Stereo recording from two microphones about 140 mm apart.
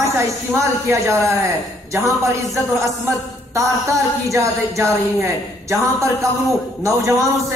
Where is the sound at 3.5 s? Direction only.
20° right (ahead or behind).